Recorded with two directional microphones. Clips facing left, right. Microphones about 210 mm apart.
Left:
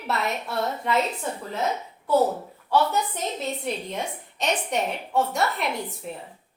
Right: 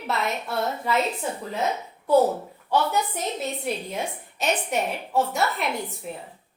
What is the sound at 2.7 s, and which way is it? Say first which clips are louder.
A woman's voice: left 1 dB; 10° right (ahead or behind).